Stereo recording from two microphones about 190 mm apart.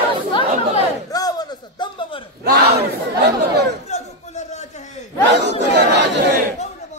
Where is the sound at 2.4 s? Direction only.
60° right (ahead or behind).